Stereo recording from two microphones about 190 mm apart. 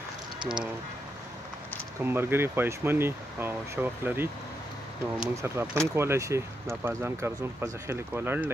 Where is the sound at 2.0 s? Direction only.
10° right (ahead or behind).